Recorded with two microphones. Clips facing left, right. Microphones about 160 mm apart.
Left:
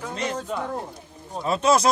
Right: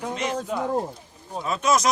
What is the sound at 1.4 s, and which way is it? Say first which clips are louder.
Speech: left 2 dB; 30° left (ahead or behind).